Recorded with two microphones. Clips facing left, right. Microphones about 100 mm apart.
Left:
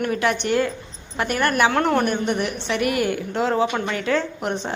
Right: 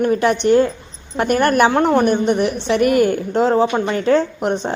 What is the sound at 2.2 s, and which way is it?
Speech, 40° right (ahead or behind).